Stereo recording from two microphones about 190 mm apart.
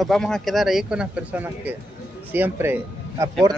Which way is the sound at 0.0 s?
Centre (ahead or behind).